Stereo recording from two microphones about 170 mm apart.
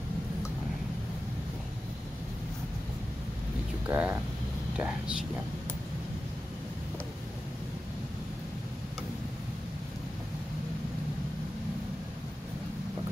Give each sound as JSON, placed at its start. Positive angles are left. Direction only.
{"t": 3.9, "sound": "speech", "side_deg": -15}